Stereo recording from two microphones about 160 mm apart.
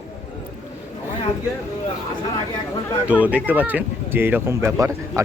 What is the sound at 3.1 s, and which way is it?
Speech, 10° right (ahead or behind).